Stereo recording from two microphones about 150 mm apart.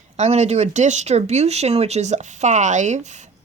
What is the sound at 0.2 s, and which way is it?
A woman's voice, 45° right (ahead or behind).